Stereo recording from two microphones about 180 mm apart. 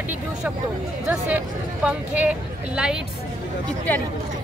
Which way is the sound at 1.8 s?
10° right (ahead or behind).